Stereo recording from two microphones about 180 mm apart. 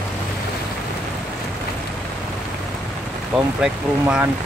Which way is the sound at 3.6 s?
5° right (ahead or behind).